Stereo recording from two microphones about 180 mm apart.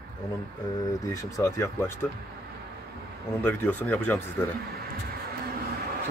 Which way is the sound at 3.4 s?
10° left (ahead or behind).